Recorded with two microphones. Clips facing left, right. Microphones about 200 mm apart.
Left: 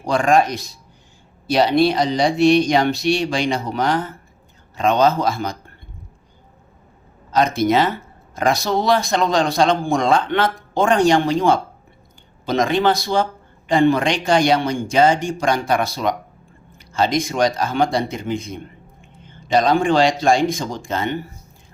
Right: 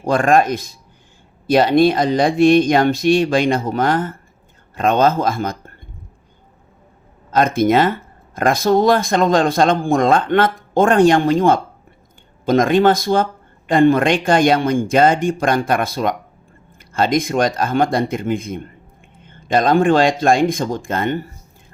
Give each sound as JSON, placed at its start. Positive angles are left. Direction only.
{"t": 0.0, "sound": "speech", "side_deg": -55}
{"t": 7.3, "sound": "speech", "side_deg": -50}